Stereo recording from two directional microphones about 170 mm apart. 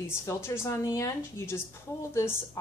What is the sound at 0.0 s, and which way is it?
Speech, 15° left (ahead or behind).